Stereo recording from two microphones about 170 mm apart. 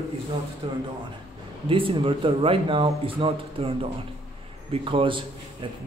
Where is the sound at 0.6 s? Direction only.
30° right (ahead or behind).